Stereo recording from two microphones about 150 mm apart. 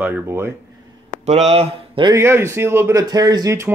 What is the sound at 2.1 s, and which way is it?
Speech, 15° right (ahead or behind).